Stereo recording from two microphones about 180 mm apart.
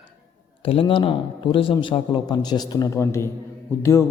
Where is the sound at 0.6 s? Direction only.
30° left (ahead or behind).